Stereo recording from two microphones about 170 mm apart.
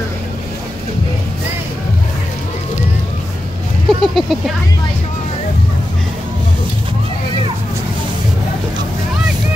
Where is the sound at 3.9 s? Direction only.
Centre (ahead or behind).